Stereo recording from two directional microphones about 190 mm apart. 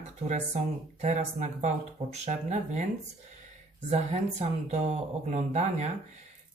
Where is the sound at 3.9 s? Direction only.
35° right (ahead or behind).